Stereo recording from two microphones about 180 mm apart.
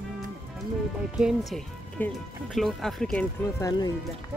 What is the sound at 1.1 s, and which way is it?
Speech, 5° right (ahead or behind).